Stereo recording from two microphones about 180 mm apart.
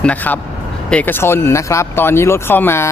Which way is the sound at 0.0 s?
10° left (ahead or behind).